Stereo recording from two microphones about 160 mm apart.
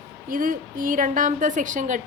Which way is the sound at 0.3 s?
60° right (ahead or behind).